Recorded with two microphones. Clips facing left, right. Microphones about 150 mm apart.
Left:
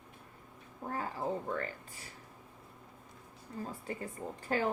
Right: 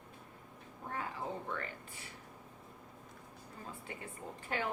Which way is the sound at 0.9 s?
35° left (ahead or behind).